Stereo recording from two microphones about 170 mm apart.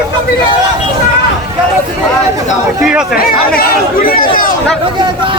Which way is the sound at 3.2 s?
60° left (ahead or behind).